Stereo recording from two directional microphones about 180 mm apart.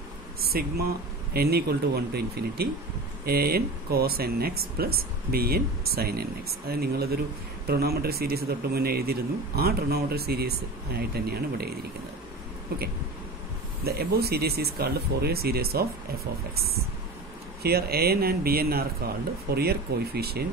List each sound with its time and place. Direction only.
0.4 s speech: 55° right (ahead or behind)
13.8 s speech: 60° right (ahead or behind)